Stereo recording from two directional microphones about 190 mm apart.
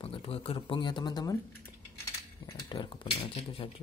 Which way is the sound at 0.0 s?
30° left (ahead or behind).